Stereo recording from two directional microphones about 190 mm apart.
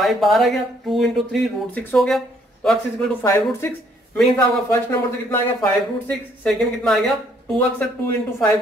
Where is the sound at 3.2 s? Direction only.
15° left (ahead or behind).